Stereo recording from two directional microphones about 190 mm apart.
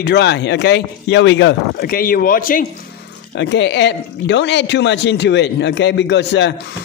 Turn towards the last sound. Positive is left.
turn(degrees=65)  # may be behind; listen again after turning